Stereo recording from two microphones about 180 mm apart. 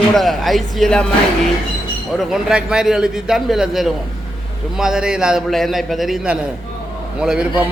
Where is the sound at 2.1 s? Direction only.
Centre (ahead or behind).